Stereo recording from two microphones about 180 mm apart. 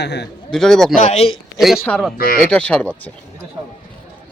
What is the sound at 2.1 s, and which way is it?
Moo, 55° left (ahead or behind).